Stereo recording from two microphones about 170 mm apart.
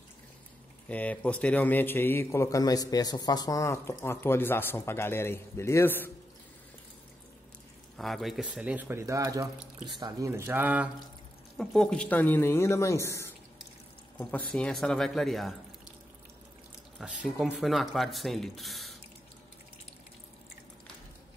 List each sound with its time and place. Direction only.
0.8 s a man's voice: 10° left (ahead or behind)
8.0 s speech: centre (ahead or behind)
11.5 s a man's voice: centre (ahead or behind)
17.0 s speech: 5° right (ahead or behind)